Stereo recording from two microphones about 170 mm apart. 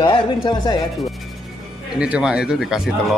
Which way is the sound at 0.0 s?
25° left (ahead or behind).